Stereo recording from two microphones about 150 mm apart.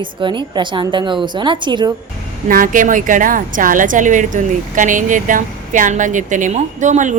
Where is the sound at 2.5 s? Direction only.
65° right (ahead or behind).